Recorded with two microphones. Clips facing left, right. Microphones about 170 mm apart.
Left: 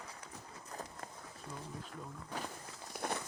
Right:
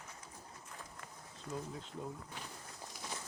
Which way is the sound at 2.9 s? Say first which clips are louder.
Left 9 dB; 60° left (ahead or behind).